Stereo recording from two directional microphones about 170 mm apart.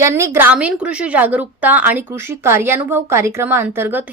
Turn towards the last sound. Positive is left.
turn(degrees=-15)  # may be behind; listen again after turning